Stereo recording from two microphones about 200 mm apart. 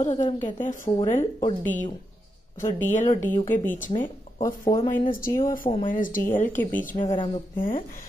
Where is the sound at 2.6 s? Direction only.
40° left (ahead or behind).